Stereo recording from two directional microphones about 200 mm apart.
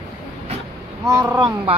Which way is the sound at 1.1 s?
20° right (ahead or behind).